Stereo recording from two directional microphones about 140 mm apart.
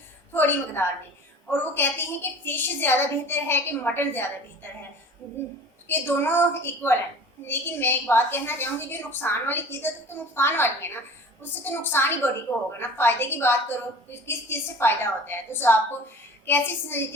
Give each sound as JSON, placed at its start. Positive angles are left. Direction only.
{"t": 0.3, "sound": "a woman's voice", "side_deg": 15}
{"t": 5.9, "sound": "a woman's voice", "side_deg": 15}